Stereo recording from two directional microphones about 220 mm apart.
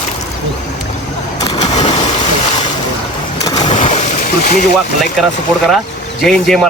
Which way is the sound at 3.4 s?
20° left (ahead or behind).